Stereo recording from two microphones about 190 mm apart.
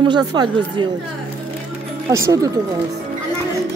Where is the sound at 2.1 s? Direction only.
15° right (ahead or behind).